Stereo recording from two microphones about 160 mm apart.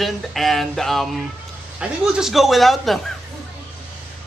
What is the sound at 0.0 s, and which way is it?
Speech, centre (ahead or behind).